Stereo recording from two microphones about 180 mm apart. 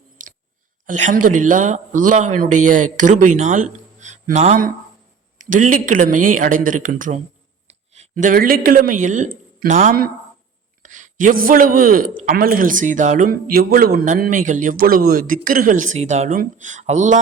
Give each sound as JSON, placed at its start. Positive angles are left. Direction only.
{"t": 0.9, "sound": "a man's voice", "side_deg": -45}